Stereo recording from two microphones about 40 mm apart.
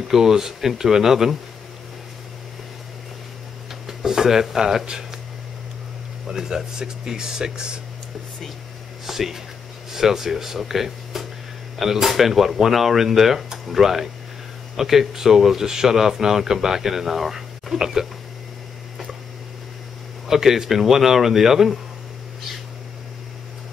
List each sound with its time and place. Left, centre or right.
0.1 s speech: centre
3.8 s a sound: centre
6.2 s speech: centre
9.0 s speech: centre
20.2 s speech: centre